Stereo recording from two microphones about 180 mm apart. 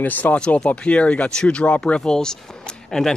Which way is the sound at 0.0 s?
10° left (ahead or behind).